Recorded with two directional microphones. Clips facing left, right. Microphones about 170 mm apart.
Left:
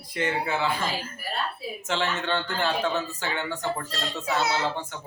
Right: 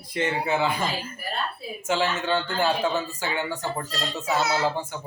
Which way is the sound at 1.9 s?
10° right (ahead or behind).